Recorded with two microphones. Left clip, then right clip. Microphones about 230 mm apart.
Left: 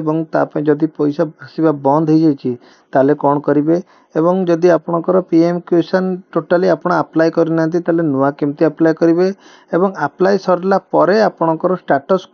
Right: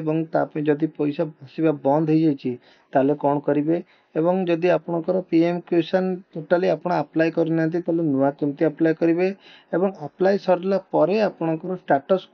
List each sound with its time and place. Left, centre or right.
0.0 s speech: left